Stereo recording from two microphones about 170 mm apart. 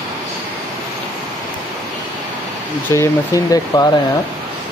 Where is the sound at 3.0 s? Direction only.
20° left (ahead or behind).